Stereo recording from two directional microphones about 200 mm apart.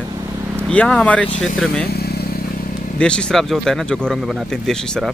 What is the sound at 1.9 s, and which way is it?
Motorcycle, 50° left (ahead or behind).